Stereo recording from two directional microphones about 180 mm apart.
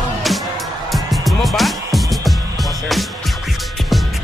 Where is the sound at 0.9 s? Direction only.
Centre (ahead or behind).